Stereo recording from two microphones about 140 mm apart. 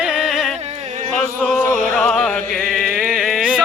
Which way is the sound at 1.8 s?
5° left (ahead or behind).